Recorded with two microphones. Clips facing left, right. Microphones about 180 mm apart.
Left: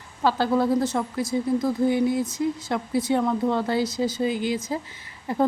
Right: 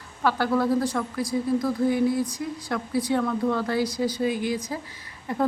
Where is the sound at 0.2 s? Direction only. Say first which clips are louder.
Left 2 dB; 25° left (ahead or behind).